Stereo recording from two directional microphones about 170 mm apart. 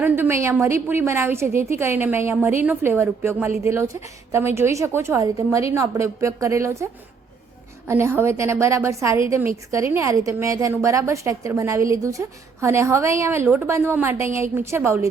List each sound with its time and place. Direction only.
0.0 s a woman's voice: 15° right (ahead or behind)
7.9 s a woman's voice: 15° right (ahead or behind)